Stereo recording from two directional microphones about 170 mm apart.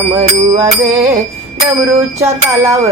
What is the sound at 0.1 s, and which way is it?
Music, 20° right (ahead or behind).